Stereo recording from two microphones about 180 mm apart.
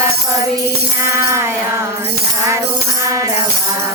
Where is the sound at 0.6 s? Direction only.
15° right (ahead or behind).